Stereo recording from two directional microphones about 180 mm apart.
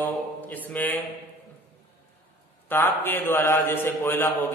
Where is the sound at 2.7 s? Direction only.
10° left (ahead or behind).